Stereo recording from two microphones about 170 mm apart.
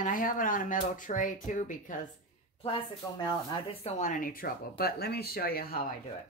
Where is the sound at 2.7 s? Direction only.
25° left (ahead or behind).